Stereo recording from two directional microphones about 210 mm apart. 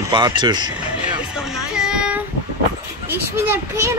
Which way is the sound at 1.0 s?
5° right (ahead or behind).